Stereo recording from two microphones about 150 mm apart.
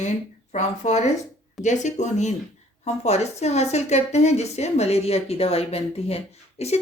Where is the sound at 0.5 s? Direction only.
50° left (ahead or behind).